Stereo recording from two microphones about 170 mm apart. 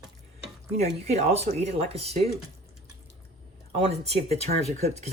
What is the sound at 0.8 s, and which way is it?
Speech, 40° right (ahead or behind).